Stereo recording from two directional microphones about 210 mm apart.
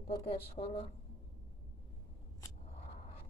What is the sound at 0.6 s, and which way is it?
Speech, 30° left (ahead or behind).